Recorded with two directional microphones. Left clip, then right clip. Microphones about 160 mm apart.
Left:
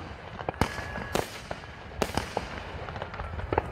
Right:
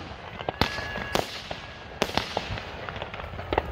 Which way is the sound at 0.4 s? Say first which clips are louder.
Right 2 dB; 40° left (ahead or behind).